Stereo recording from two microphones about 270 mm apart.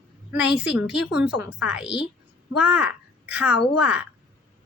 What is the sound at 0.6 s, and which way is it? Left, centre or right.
A woman's voice, centre.